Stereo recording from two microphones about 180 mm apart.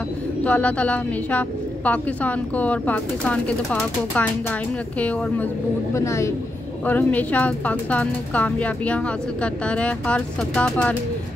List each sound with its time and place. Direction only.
0.4 s speech: 5° left (ahead or behind)
5.9 s speech: 15° left (ahead or behind)